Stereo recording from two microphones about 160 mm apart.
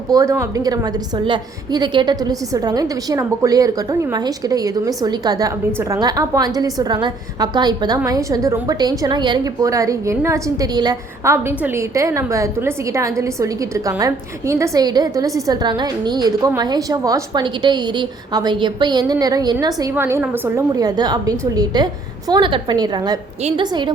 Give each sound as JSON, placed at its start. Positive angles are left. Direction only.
{"t": 0.1, "sound": "a woman's voice", "side_deg": -20}
{"t": 20.7, "sound": "a woman's voice", "side_deg": -25}
{"t": 23.4, "sound": "a woman's voice", "side_deg": -40}